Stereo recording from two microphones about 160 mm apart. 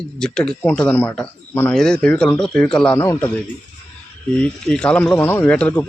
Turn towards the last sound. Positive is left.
turn(degrees=10)  # may be behind; listen again after turning